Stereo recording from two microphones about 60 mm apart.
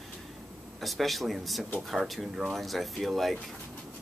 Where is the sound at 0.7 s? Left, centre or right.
Centre.